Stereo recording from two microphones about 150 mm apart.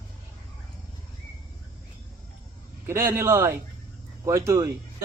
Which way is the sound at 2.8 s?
15° right (ahead or behind).